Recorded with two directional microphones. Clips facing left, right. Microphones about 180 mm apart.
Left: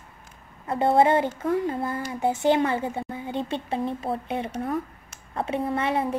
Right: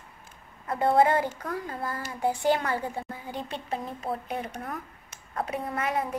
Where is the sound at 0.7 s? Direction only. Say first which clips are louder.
Left 3 dB; 25° left (ahead or behind).